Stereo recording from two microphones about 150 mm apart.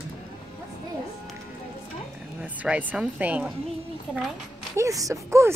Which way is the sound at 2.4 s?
10° right (ahead or behind).